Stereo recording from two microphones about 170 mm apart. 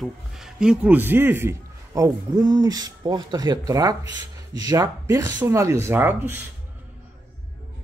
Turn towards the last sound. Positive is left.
turn(degrees=-10)  # may be behind; listen again after turning